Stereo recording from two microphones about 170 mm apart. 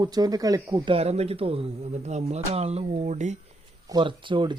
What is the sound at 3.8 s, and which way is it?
Speech, 25° right (ahead or behind).